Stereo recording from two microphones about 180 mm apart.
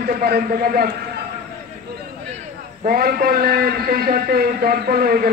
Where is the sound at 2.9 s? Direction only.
55° right (ahead or behind).